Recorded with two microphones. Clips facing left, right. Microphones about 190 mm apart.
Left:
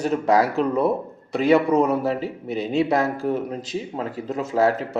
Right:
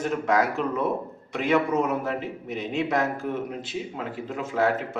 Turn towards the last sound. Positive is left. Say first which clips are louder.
# left 4 dB
turn(degrees=40)  # may be behind; listen again after turning